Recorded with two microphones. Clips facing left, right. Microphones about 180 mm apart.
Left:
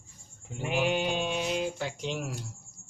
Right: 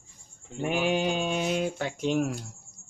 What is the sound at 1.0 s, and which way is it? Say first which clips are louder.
Speech: right 2 dB; 45° right (ahead or behind).